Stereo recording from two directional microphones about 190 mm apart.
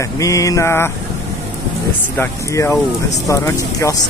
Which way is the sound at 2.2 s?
15° left (ahead or behind).